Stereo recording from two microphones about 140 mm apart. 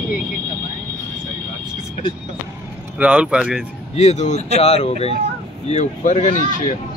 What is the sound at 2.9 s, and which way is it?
Speech, 10° right (ahead or behind).